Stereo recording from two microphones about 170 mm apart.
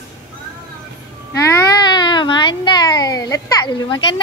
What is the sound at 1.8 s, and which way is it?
Baby cry, 25° left (ahead or behind).